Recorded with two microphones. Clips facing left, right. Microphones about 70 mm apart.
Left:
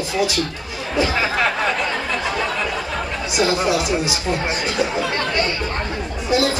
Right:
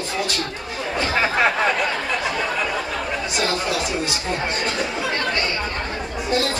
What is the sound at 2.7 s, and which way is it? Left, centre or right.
Speech, centre.